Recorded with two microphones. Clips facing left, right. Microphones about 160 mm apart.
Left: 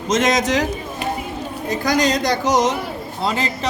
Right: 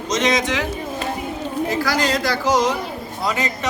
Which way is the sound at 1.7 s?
20° left (ahead or behind).